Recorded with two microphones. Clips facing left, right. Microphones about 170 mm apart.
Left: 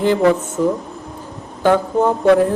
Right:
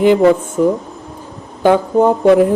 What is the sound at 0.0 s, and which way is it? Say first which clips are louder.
A woman's voice: right 4 dB; 20° right (ahead or behind).